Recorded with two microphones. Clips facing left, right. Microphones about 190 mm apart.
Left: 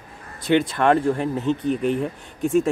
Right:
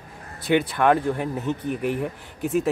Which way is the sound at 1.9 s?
15° right (ahead or behind).